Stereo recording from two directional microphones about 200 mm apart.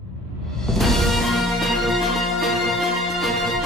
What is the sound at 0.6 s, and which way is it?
Music, centre (ahead or behind).